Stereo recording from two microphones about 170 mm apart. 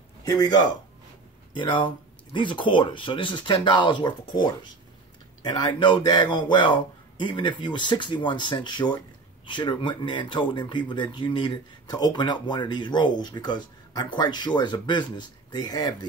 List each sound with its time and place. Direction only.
0.2 s speech: 20° left (ahead or behind)